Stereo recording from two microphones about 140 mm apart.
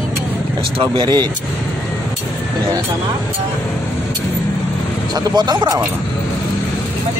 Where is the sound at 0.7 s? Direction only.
35° right (ahead or behind).